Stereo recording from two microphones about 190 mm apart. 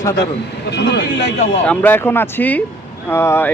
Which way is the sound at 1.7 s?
10° left (ahead or behind).